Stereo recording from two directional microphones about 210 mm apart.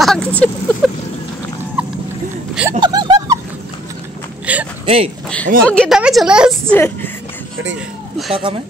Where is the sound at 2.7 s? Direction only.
20° right (ahead or behind).